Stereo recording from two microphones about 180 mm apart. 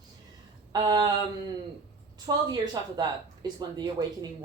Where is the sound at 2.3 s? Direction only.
20° right (ahead or behind).